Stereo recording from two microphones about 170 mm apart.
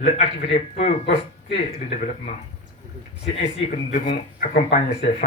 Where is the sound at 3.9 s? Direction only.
50° left (ahead or behind).